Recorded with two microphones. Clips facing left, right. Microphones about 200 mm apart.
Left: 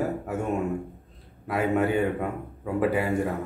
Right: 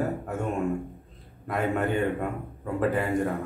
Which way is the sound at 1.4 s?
5° left (ahead or behind).